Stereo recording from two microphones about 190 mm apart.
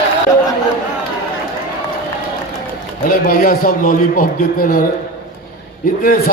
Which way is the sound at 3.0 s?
50° left (ahead or behind).